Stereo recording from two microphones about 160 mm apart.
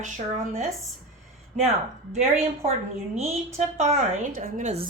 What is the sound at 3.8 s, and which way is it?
A woman's voice, 45° right (ahead or behind).